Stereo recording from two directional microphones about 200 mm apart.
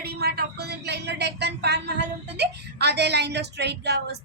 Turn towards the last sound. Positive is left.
turn(degrees=-55)  # may be behind; listen again after turning